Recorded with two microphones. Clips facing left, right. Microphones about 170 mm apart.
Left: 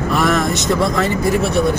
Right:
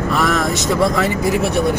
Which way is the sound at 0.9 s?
10° right (ahead or behind).